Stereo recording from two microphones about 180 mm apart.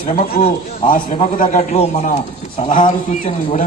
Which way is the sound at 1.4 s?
35° left (ahead or behind).